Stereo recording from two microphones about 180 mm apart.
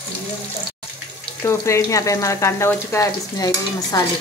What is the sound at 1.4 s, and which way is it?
Speech, 15° left (ahead or behind).